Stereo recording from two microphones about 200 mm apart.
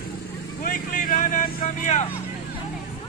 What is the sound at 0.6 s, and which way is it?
Vehicle, 45° left (ahead or behind).